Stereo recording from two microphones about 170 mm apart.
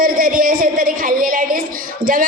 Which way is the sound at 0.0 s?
55° right (ahead or behind).